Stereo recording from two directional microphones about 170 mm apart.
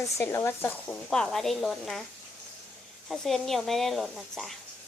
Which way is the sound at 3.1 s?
Centre (ahead or behind).